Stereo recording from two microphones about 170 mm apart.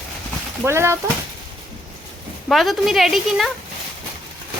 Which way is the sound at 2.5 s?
Centre (ahead or behind).